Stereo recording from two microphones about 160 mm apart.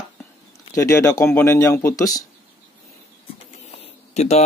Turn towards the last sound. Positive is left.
turn(degrees=45)  # may be behind; listen again after turning